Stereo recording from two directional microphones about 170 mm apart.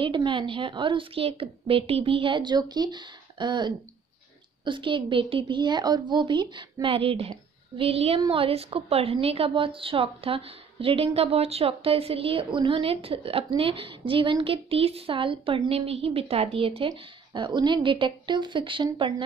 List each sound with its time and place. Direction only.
0.0 s a woman's voice: 30° right (ahead or behind)